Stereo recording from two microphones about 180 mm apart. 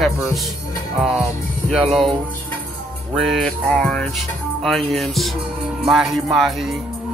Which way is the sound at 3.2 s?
Centre (ahead or behind).